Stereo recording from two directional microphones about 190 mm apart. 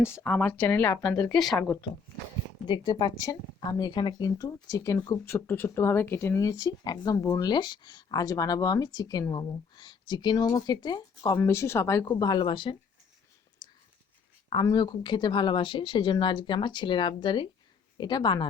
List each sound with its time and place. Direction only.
0.0 s speech: 15° left (ahead or behind)
2.6 s speech: 25° left (ahead or behind)
13.6 s whispering: 20° left (ahead or behind)
14.5 s speech: 20° left (ahead or behind)